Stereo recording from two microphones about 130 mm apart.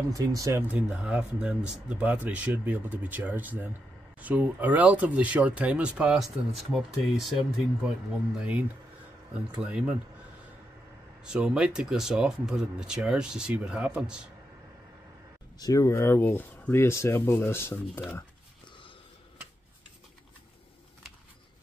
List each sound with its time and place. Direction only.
0.1 s speech: 25° right (ahead or behind)
0.7 s speech: 10° right (ahead or behind)
9.6 s speech: 10° right (ahead or behind)
11.2 s speech: 5° right (ahead or behind)
15.6 s speech: 25° left (ahead or behind)